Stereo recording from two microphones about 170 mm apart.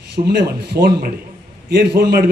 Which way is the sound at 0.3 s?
65° right (ahead or behind).